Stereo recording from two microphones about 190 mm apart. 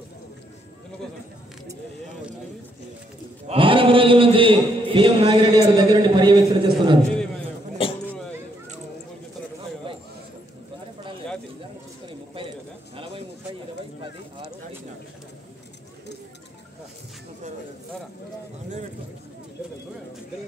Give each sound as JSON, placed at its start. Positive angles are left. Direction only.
{"t": 3.4, "sound": "a man's voice", "side_deg": -30}
{"t": 12.9, "sound": "bird", "side_deg": -30}